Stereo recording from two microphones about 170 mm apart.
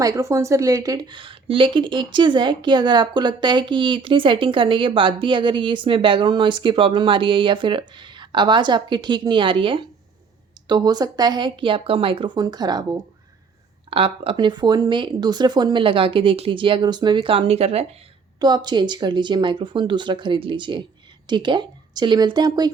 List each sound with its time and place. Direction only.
0.0 s speech: 20° right (ahead or behind); by 17.8 s 35° right (ahead or behind)
18.3 s speech: 25° right (ahead or behind)